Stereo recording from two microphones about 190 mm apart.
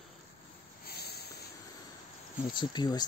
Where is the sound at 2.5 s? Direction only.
25° left (ahead or behind).